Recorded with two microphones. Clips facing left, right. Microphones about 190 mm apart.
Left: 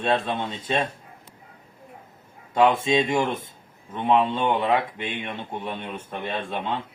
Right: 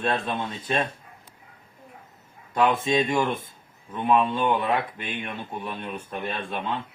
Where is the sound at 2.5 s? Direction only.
25° left (ahead or behind).